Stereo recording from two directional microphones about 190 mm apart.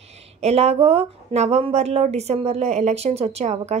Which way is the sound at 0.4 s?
35° right (ahead or behind).